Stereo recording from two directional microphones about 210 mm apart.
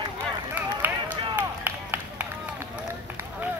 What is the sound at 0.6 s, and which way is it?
Run, 5° right (ahead or behind).